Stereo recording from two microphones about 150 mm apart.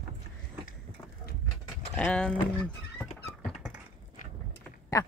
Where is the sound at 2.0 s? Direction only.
5° left (ahead or behind).